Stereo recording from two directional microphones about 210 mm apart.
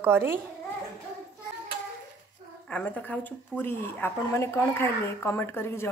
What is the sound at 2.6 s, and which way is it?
Speech, 5° left (ahead or behind).